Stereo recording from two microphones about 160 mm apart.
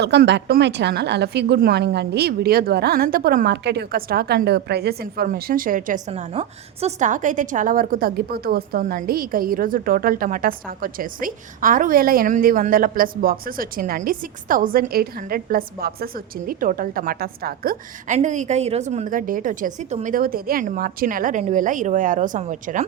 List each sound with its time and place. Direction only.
0.0 s speech: 90° right; by 6.0 s 60° right (ahead or behind)
6.1 s a woman's voice: 40° right (ahead or behind)